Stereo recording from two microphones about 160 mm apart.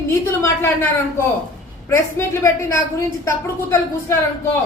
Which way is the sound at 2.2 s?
20° left (ahead or behind).